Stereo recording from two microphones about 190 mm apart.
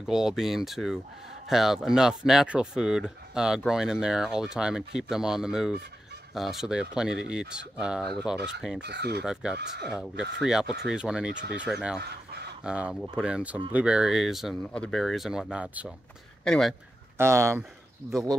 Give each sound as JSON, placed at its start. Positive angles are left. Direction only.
{"t": 0.0, "sound": "speech", "side_deg": 0}
{"t": 8.4, "sound": "speech", "side_deg": -60}
{"t": 9.2, "sound": "speech", "side_deg": -5}
{"t": 17.2, "sound": "speech", "side_deg": -15}